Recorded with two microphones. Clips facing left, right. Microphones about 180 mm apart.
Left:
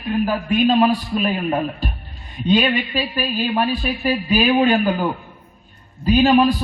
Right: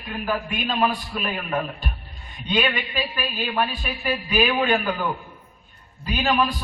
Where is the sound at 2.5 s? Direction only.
35° left (ahead or behind).